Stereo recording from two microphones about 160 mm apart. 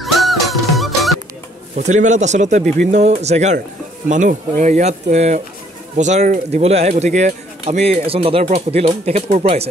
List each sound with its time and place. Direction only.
0.0 s music: centre (ahead or behind)
1.8 s speech: 50° right (ahead or behind)